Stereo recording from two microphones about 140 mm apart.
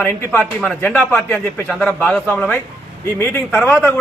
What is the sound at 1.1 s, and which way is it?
A man's voice, 15° left (ahead or behind).